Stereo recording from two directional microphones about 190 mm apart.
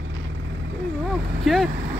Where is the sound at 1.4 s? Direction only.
Centre (ahead or behind).